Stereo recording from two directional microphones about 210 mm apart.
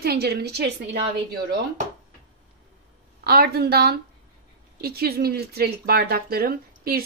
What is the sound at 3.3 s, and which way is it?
Speech, 50° right (ahead or behind).